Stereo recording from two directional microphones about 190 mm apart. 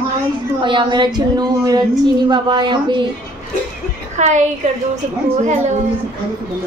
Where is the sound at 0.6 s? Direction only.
25° right (ahead or behind).